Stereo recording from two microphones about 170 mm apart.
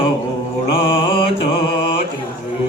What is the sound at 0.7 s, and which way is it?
Mantra, 30° left (ahead or behind).